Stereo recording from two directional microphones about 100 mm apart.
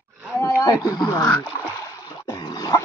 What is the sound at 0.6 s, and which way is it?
Speech, 35° left (ahead or behind).